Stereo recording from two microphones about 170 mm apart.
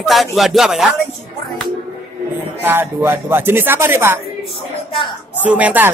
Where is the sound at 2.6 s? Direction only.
10° right (ahead or behind).